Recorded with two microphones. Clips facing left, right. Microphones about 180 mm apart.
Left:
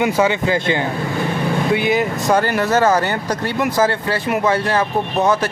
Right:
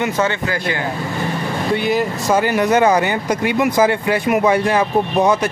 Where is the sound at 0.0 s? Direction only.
15° left (ahead or behind).